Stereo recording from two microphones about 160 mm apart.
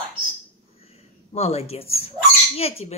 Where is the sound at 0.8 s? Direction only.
40° left (ahead or behind).